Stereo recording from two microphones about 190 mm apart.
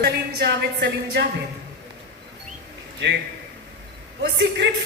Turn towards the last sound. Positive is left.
turn(degrees=-60)  # may be behind; listen again after turning